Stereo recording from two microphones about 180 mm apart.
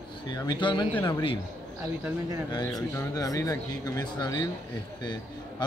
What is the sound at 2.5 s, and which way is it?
Speech, 20° left (ahead or behind).